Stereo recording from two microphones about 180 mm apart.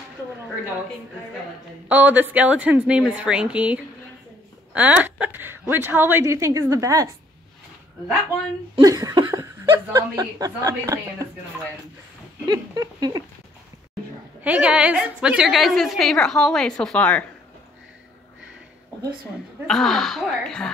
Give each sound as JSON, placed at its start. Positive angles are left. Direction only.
{"t": 1.9, "sound": "a woman's voice", "side_deg": -10}
{"t": 8.7, "sound": "speech", "side_deg": -20}
{"t": 12.4, "sound": "speech", "side_deg": -20}
{"t": 14.4, "sound": "a woman's voice", "side_deg": -5}
{"t": 19.7, "sound": "a woman's voice", "side_deg": 0}